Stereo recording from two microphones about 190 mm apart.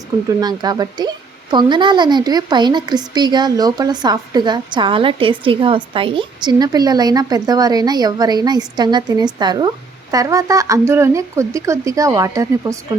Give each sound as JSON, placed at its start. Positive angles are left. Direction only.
{"t": 0.3, "sound": "a woman's voice", "side_deg": -20}